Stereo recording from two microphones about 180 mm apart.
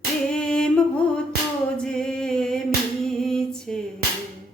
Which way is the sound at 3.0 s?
5° left (ahead or behind).